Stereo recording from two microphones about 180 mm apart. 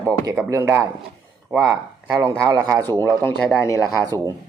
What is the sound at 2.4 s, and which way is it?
Speech, 20° right (ahead or behind).